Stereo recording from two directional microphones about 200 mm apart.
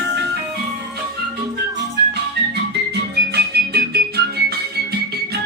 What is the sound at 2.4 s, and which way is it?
Music, 55° right (ahead or behind).